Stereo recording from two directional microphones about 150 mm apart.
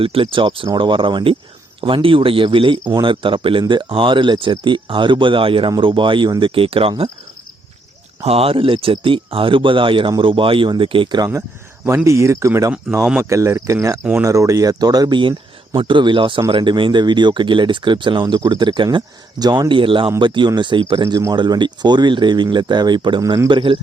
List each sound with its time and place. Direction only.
0.0 s speech: 35° right (ahead or behind)
8.2 s speech: 40° right (ahead or behind)
12.0 s speech: 20° right (ahead or behind)